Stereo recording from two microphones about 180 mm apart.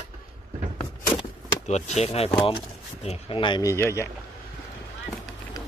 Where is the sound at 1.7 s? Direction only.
40° left (ahead or behind); by 4.1 s 15° left (ahead or behind).